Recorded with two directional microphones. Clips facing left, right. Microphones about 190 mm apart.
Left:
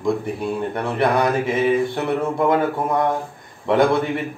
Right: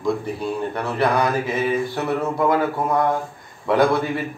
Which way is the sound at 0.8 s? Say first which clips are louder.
Left 1 dB; 25° left (ahead or behind).